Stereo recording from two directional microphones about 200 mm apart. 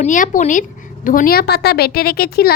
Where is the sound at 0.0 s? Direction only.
40° left (ahead or behind).